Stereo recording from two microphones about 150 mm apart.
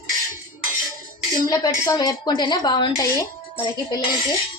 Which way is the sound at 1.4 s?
25° left (ahead or behind).